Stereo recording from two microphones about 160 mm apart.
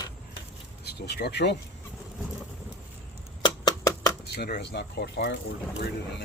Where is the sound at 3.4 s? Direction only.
25° left (ahead or behind).